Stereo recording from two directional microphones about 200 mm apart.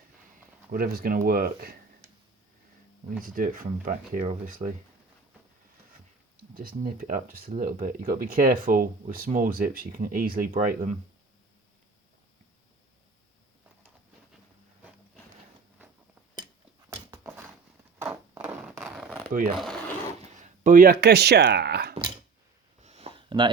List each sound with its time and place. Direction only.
0.7 s speech: 45° right (ahead or behind)
3.2 s speech: 45° right (ahead or behind)
6.5 s speech: 50° right (ahead or behind)
16.9 s dog: 15° right (ahead or behind)
18.0 s a sound: 5° right (ahead or behind)
20.2 s speech: 35° right (ahead or behind); by 21.9 s 55° right (ahead or behind)
22.8 s a sound: 30° right (ahead or behind)